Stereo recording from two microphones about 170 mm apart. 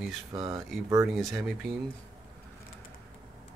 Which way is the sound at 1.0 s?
Centre (ahead or behind).